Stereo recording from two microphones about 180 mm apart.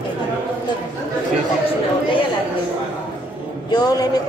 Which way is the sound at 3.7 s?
20° left (ahead or behind).